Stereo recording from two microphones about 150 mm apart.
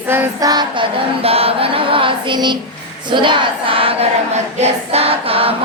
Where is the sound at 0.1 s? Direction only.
20° right (ahead or behind).